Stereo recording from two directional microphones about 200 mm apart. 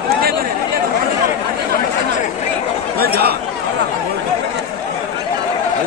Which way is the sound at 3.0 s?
50° right (ahead or behind).